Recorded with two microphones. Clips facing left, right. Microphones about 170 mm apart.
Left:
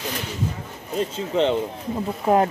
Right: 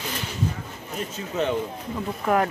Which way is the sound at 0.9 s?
25° left (ahead or behind).